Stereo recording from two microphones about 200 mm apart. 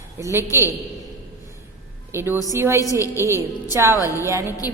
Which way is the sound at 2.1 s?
10° right (ahead or behind).